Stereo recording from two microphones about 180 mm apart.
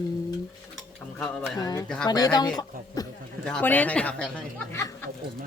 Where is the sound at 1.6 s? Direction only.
20° left (ahead or behind).